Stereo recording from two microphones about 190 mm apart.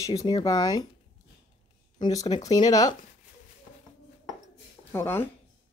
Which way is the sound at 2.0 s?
20° left (ahead or behind).